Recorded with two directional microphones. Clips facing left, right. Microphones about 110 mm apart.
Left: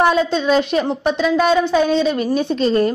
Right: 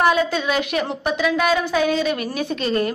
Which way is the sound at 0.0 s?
25° left (ahead or behind).